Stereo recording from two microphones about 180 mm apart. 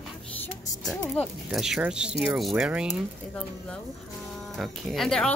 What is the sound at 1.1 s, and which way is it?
Speech, centre (ahead or behind).